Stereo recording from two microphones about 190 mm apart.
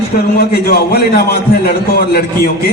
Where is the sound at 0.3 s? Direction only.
55° left (ahead or behind).